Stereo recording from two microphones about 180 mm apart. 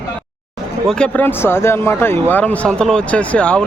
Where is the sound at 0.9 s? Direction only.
5° left (ahead or behind).